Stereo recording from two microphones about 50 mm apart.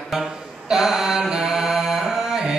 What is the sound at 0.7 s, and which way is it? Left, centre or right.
Mantra, centre.